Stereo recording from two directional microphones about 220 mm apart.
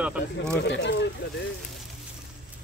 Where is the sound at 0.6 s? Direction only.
50° left (ahead or behind).